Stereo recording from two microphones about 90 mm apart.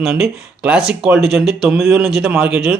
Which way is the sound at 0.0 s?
5° right (ahead or behind).